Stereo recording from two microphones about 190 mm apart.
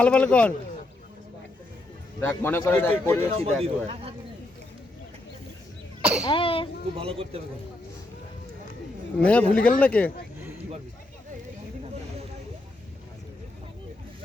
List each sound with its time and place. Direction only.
0.0 s speech: 5° left (ahead or behind)
2.4 s speech: 10° left (ahead or behind)
3.4 s speech: 30° right (ahead or behind)
6.0 s cough: 5° right (ahead or behind)
6.2 s a child's voice: 30° left (ahead or behind)
6.9 s speech: 30° right (ahead or behind)
9.2 s speech: 5° left (ahead or behind)